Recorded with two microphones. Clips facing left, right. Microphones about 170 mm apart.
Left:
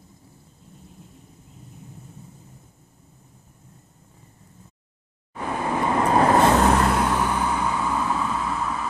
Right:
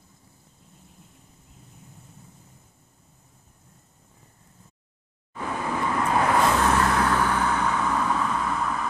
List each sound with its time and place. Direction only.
5.3 s vehicle: 20° left (ahead or behind)
6.9 s vehicle: 10° left (ahead or behind)